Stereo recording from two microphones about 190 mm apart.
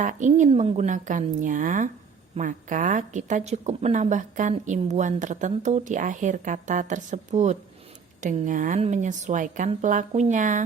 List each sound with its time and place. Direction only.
0.0 s speech: 40° right (ahead or behind)